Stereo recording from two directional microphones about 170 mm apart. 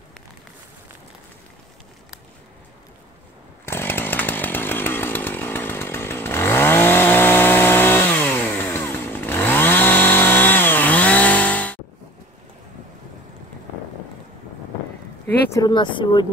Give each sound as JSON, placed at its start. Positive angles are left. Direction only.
{"t": 3.6, "sound": "chainsaw", "side_deg": 15}
{"t": 15.2, "sound": "speech", "side_deg": 20}